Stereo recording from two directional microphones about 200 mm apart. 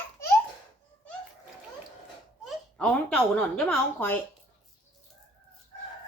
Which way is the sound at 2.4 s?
5° left (ahead or behind).